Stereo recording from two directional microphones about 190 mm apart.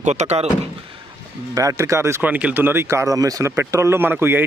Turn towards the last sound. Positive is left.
turn(degrees=-10)  # may be behind; listen again after turning